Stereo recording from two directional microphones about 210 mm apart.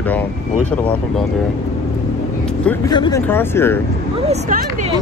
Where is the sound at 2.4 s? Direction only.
5° left (ahead or behind).